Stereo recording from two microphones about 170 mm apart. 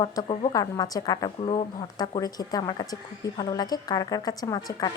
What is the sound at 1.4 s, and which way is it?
A woman's voice, 30° left (ahead or behind).